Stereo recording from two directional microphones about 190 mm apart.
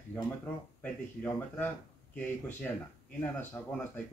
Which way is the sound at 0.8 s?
10° left (ahead or behind).